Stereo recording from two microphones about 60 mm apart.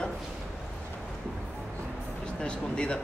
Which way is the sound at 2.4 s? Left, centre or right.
Centre.